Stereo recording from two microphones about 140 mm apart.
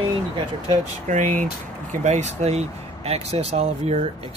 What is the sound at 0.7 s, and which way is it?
Speech, 60° right (ahead or behind).